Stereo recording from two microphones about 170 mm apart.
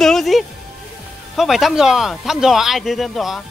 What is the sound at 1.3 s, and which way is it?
Speech, centre (ahead or behind).